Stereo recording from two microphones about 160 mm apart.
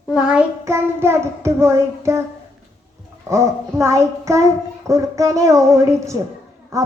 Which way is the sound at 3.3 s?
20° right (ahead or behind).